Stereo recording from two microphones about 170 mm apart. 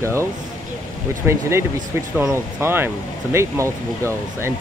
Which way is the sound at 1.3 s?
10° right (ahead or behind).